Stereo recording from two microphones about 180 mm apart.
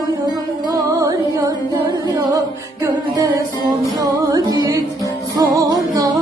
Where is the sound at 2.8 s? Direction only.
20° right (ahead or behind).